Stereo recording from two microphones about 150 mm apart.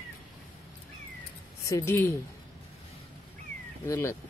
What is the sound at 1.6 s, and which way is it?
Speech, 20° left (ahead or behind).